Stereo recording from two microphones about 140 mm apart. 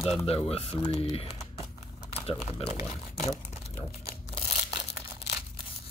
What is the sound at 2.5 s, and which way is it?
Speech, 50° left (ahead or behind).